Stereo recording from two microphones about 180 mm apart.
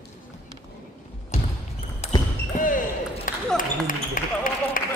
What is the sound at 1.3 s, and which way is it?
Basketball bounce, 40° left (ahead or behind).